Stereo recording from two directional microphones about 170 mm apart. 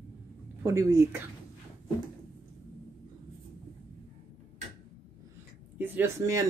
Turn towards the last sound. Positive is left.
turn(degrees=-15)  # may be behind; listen again after turning